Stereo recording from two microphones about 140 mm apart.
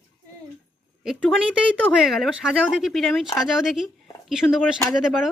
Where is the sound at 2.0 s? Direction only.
Centre (ahead or behind).